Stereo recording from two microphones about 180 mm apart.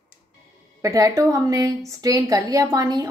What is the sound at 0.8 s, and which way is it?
A woman's voice, 15° right (ahead or behind).